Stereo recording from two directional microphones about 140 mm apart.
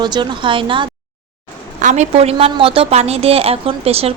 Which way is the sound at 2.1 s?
45° right (ahead or behind).